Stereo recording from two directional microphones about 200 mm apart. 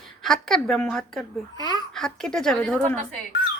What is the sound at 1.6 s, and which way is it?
Speech, 20° left (ahead or behind).